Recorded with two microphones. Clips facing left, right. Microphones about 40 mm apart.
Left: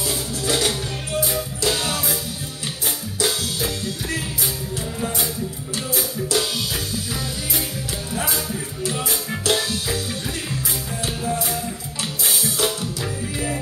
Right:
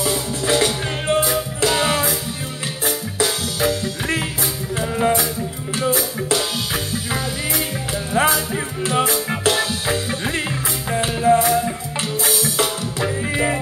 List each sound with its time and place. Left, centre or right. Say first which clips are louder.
0.0 s music: right 4 dB; right
1.3 s music: right 4 dB; right
4.7 s music: right 11 dB; right
5.8 s music: right 5 dB; right
8.1 s music: right 9 dB; right
9.5 s music: right 1 dB; right
11.0 s music: right 11 dB; right
13.0 s music: right 10 dB; right